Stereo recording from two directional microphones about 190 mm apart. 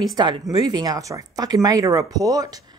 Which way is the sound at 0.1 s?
20° right (ahead or behind).